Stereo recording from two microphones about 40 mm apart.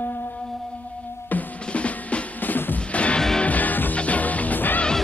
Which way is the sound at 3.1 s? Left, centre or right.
Centre.